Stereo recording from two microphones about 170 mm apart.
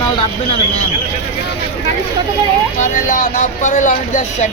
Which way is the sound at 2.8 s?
50° left (ahead or behind).